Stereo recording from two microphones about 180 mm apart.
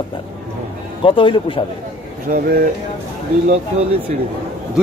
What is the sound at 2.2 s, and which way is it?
Speech, 50° right (ahead or behind).